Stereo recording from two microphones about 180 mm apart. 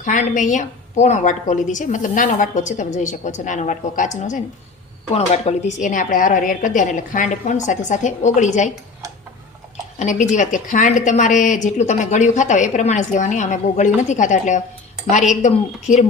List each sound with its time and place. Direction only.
0.0 s a woman's voice: 45° left (ahead or behind)
10.0 s a woman's voice: 40° left (ahead or behind)